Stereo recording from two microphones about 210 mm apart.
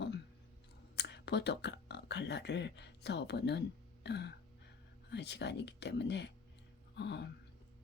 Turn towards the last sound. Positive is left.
turn(degrees=55)  # may be behind; listen again after turning